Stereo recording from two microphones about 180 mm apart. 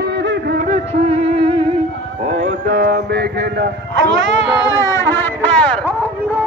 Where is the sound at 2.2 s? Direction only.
40° right (ahead or behind); by 4.4 s 80° right.